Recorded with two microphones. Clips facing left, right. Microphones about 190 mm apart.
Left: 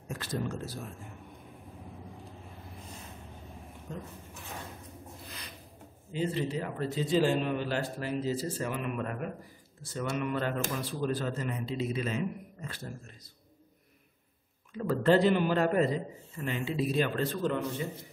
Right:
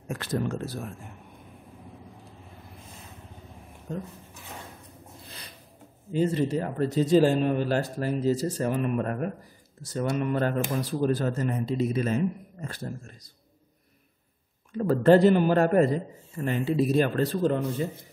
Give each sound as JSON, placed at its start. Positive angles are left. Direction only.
{"t": 0.1, "sound": "speech", "side_deg": -60}
{"t": 6.1, "sound": "a man's voice", "side_deg": -45}
{"t": 14.7, "sound": "a man's voice", "side_deg": -45}